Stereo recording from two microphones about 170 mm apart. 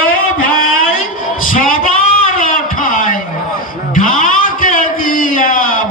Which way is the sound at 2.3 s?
50° left (ahead or behind).